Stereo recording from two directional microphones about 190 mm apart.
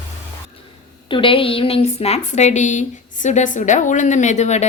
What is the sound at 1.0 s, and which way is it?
A woman's voice, 25° left (ahead or behind).